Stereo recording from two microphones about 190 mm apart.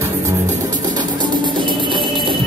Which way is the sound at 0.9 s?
25° right (ahead or behind).